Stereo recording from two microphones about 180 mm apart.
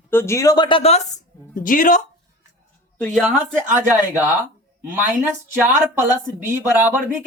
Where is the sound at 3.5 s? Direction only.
10° right (ahead or behind).